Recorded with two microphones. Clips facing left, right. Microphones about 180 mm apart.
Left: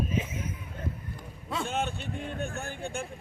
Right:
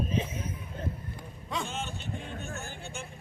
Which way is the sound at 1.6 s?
60° left (ahead or behind).